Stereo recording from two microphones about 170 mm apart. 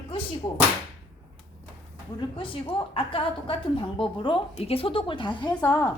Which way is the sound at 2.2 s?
30° left (ahead or behind).